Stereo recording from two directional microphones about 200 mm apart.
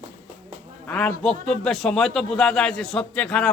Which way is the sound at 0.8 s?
5° left (ahead or behind).